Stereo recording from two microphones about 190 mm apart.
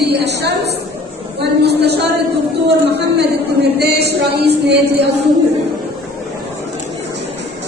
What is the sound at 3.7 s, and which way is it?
Speech, 60° right (ahead or behind).